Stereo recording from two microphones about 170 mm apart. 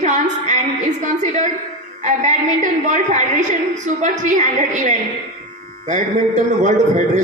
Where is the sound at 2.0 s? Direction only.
45° right (ahead or behind).